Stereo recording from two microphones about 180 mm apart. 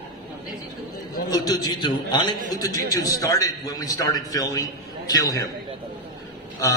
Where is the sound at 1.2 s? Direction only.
20° left (ahead or behind).